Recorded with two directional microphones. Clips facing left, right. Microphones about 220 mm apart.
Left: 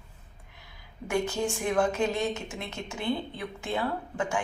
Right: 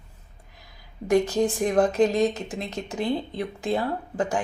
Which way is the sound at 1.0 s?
35° right (ahead or behind).